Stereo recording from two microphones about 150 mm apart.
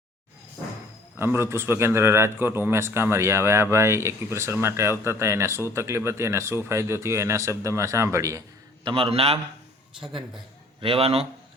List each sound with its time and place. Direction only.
1.2 s a man's voice: 15° right (ahead or behind)
8.9 s a man's voice: 35° right (ahead or behind)
10.8 s a man's voice: 40° right (ahead or behind)